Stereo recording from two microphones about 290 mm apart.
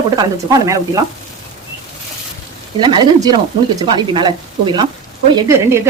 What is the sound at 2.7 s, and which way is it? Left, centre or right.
Speech, centre.